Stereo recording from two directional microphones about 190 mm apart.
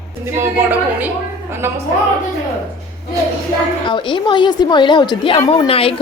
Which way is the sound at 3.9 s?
25° left (ahead or behind).